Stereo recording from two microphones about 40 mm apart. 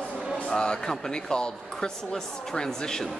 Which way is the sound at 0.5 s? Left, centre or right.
Centre.